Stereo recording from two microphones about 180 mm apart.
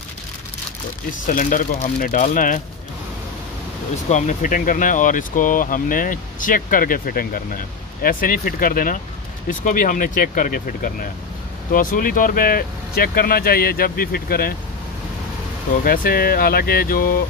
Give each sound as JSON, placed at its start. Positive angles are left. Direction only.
{"t": 1.2, "sound": "speech", "side_deg": 45}
{"t": 4.1, "sound": "speech", "side_deg": 45}
{"t": 15.8, "sound": "speech", "side_deg": 55}